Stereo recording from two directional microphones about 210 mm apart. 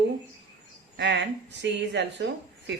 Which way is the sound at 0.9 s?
55° right (ahead or behind).